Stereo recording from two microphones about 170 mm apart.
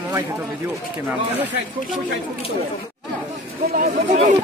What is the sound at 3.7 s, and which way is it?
Speech, 45° right (ahead or behind).